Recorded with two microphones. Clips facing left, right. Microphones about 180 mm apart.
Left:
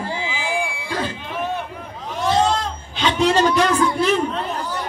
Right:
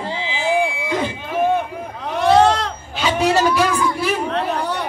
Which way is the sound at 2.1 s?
65° right (ahead or behind).